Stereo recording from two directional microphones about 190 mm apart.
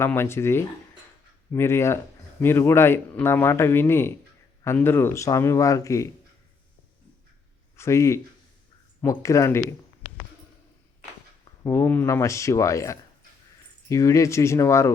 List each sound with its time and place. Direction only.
0.0 s a man's voice: 15° left (ahead or behind)
7.8 s a man's voice: 15° left (ahead or behind)
11.6 s a man's voice: 15° left (ahead or behind)